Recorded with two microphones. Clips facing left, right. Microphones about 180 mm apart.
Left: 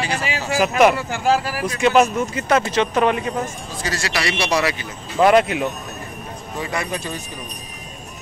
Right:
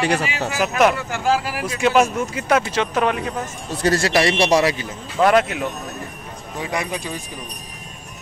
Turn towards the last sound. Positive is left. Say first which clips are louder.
# even
turn(degrees=-10)  # may be behind; listen again after turning